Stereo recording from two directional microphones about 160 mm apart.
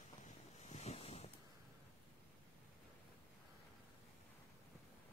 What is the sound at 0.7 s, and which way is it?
Waves, 45° left (ahead or behind).